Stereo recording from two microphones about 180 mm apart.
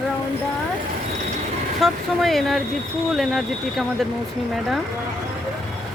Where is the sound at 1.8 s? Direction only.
Centre (ahead or behind).